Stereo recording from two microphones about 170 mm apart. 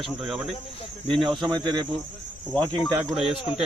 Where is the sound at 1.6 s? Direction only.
25° right (ahead or behind).